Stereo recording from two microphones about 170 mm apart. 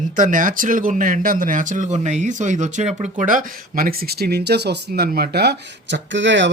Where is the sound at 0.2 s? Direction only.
50° right (ahead or behind).